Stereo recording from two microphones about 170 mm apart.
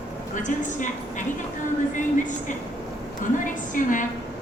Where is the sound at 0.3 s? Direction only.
50° left (ahead or behind).